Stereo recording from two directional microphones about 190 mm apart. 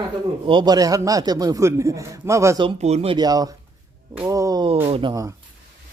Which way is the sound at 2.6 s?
30° right (ahead or behind).